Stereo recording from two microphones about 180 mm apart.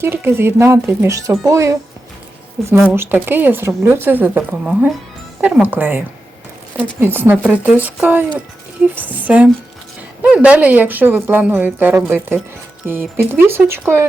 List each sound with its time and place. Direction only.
0.0 s a woman's voice: 15° right (ahead or behind)
2.7 s a woman's voice: 10° right (ahead or behind)